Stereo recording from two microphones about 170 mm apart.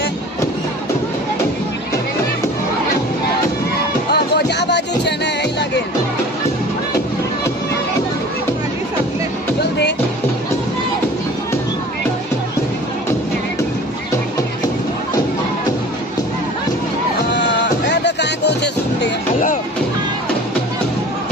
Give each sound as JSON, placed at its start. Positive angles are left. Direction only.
{"t": 4.1, "sound": "music", "side_deg": 80}
{"t": 9.6, "sound": "music", "side_deg": 75}
{"t": 17.3, "sound": "music", "side_deg": 90}